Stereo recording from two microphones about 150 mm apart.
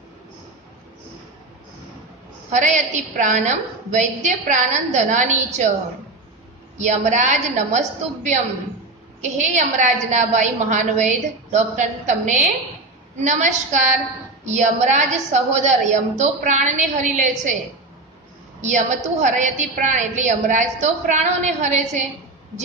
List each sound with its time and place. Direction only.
2.5 s a woman's voice: 55° right (ahead or behind)
6.9 s a woman's voice: 55° right (ahead or behind)
18.6 s a woman's voice: 55° right (ahead or behind)